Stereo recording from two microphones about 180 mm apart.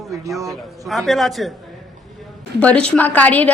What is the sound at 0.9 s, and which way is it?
Speech, centre (ahead or behind).